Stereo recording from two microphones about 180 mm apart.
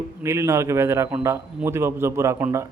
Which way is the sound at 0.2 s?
15° right (ahead or behind).